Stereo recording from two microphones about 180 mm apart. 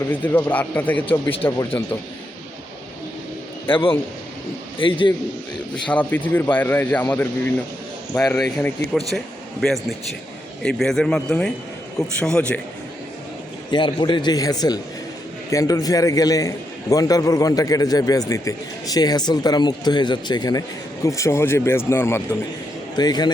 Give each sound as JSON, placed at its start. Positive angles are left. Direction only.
{"t": 0.1, "sound": "speech", "side_deg": 10}
{"t": 4.8, "sound": "a man's voice", "side_deg": 30}
{"t": 5.9, "sound": "speech", "side_deg": 10}
{"t": 13.7, "sound": "a man's voice", "side_deg": 25}